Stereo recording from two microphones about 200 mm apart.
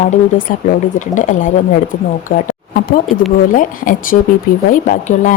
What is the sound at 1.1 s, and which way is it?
Speech, 40° left (ahead or behind).